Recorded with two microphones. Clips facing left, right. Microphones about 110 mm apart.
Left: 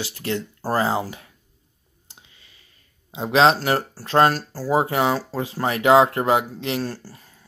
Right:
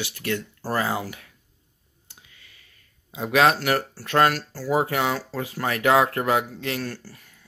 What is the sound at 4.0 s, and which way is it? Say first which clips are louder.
Speech: left 4 dB; 30° left (ahead or behind).